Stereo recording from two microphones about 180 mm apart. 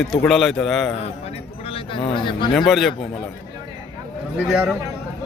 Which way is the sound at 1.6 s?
30° left (ahead or behind).